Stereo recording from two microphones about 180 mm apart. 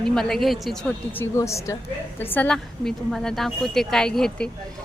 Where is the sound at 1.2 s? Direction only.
15° left (ahead or behind).